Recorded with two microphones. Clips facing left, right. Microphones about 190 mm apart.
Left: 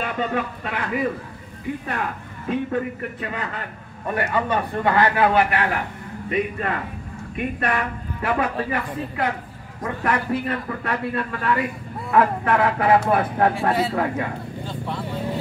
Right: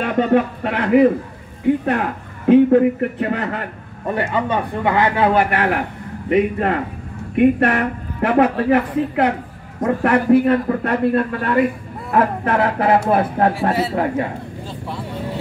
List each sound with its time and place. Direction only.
0.0 s a man's voice: 55° right (ahead or behind)
4.1 s speech: 25° right (ahead or behind)
5.3 s a man's voice: 50° right (ahead or behind)
10.5 s a man's voice: 45° right (ahead or behind)
14.7 s speech: centre (ahead or behind)